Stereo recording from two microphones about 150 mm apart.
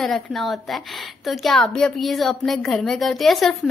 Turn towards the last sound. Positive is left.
turn(degrees=0)  # may be behind; listen again after turning